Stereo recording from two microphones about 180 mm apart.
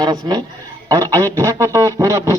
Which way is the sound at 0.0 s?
20° right (ahead or behind).